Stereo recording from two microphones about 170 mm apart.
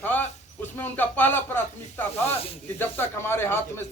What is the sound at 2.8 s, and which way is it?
Speech, 10° left (ahead or behind).